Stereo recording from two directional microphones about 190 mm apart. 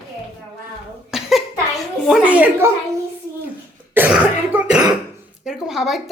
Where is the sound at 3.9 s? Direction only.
10° right (ahead or behind).